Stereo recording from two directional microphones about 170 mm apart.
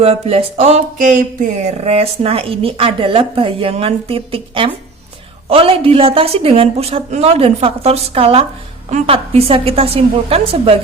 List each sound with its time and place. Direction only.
0.0 s a woman's voice: 35° right (ahead or behind); by 1.7 s 50° right (ahead or behind)
1.8 s a woman's voice: 35° right (ahead or behind)